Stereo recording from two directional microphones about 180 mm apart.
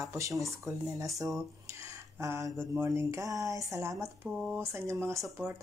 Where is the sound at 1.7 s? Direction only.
15° right (ahead or behind).